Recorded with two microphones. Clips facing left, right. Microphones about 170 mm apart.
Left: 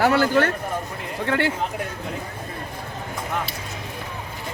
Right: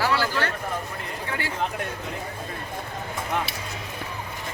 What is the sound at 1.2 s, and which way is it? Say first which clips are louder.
Speech: left 10 dB; 70° left (ahead or behind).